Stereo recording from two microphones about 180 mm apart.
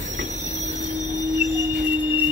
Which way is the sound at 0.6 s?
90° right.